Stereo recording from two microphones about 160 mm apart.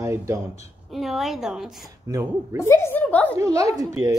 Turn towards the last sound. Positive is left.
turn(degrees=-20)  # may be behind; listen again after turning